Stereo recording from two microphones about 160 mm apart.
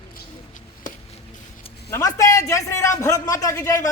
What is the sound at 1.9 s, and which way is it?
A man's voice, 20° left (ahead or behind).